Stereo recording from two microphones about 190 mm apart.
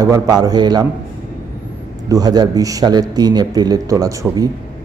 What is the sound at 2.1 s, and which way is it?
A man's voice, 20° right (ahead or behind).